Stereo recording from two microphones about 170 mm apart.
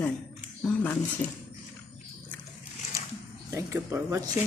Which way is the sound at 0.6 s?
10° left (ahead or behind).